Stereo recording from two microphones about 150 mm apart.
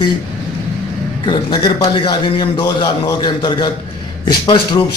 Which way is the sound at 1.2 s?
30° left (ahead or behind).